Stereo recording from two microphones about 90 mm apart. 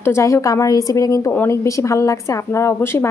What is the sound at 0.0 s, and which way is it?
A woman's voice, 30° left (ahead or behind).